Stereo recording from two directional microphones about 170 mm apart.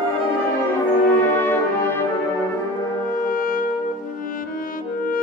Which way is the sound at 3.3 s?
55° left (ahead or behind).